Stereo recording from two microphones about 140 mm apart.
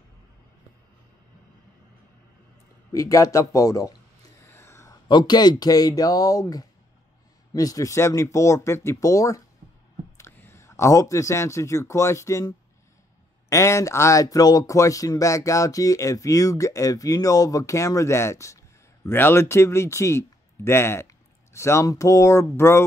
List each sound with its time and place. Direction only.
2.9 s a man's voice: 25° left (ahead or behind)
4.5 s a sound: 20° left (ahead or behind)
5.0 s a man's voice: 30° left (ahead or behind)